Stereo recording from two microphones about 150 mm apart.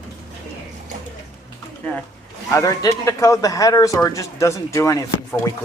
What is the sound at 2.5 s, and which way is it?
Speech, 20° left (ahead or behind).